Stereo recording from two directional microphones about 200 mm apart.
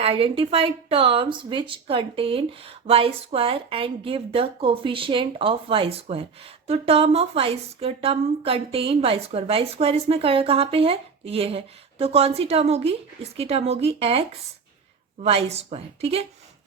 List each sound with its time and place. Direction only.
0.0 s a woman's voice: 25° right (ahead or behind)